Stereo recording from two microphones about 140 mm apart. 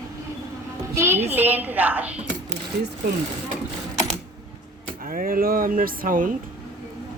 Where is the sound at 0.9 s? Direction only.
20° right (ahead or behind).